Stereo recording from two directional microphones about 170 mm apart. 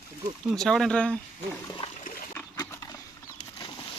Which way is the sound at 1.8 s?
30° left (ahead or behind).